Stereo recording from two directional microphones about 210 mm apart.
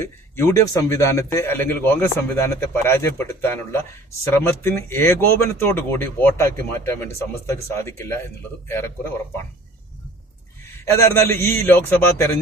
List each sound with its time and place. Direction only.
0.0 s speech: 15° left (ahead or behind)
10.9 s speech: 10° left (ahead or behind)